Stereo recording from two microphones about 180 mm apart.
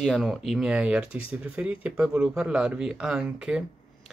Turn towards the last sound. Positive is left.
turn(degrees=-5)  # may be behind; listen again after turning